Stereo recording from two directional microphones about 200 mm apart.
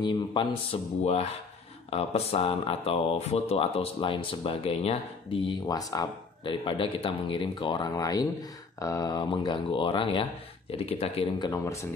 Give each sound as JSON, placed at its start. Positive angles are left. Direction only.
{"t": 0.0, "sound": "speech", "side_deg": 25}